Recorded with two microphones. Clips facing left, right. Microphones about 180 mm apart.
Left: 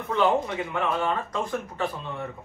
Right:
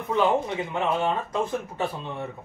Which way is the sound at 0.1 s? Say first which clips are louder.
Even; 20° right (ahead or behind).